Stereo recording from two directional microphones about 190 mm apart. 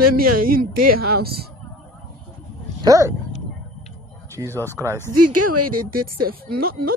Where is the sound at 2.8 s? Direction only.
20° right (ahead or behind).